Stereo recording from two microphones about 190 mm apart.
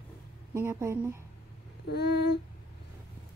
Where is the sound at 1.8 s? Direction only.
60° left (ahead or behind).